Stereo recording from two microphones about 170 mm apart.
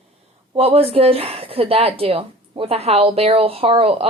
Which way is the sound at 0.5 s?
35° right (ahead or behind).